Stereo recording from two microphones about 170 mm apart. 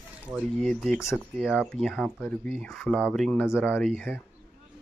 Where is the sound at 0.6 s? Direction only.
Centre (ahead or behind).